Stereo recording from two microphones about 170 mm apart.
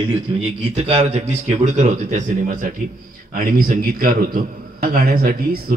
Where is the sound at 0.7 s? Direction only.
35° right (ahead or behind).